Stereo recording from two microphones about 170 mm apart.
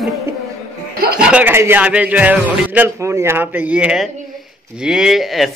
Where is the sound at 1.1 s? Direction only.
5° right (ahead or behind).